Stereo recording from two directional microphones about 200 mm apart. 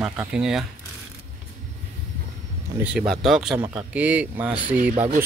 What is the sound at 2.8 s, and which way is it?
Speech, 5° right (ahead or behind).